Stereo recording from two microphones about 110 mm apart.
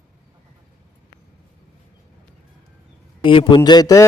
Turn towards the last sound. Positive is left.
turn(degrees=35)  # may be behind; listen again after turning